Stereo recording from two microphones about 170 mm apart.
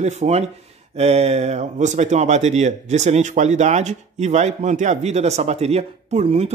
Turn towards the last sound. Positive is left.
turn(degrees=-40)  # may be behind; listen again after turning